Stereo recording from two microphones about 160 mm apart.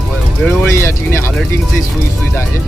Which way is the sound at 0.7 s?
15° left (ahead or behind).